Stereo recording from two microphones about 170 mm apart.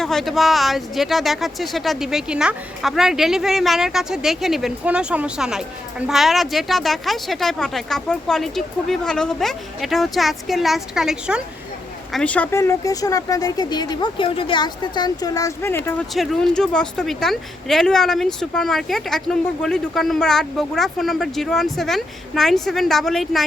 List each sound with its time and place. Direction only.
0.0 s speech: centre (ahead or behind)
12.1 s speech: 5° left (ahead or behind)
16.1 s speech: centre (ahead or behind)